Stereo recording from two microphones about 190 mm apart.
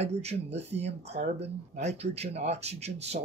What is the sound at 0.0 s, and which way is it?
Speech, 35° right (ahead or behind).